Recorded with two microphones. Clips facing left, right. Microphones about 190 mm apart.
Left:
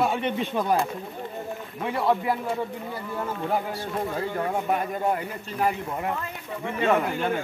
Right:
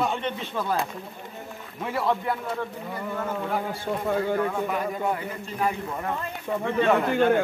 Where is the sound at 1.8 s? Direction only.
Centre (ahead or behind).